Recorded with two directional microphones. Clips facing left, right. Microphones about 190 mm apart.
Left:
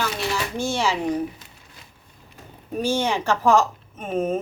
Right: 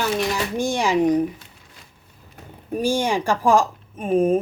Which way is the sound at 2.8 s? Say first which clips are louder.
Right 2 dB; 10° right (ahead or behind).